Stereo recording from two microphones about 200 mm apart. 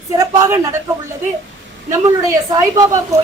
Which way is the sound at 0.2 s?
15° right (ahead or behind).